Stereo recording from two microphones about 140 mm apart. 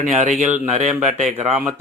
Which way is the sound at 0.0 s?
55° right (ahead or behind).